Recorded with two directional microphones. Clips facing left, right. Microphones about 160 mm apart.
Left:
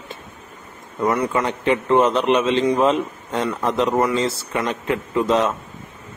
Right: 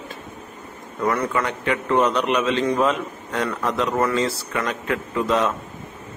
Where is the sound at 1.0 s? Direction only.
15° left (ahead or behind).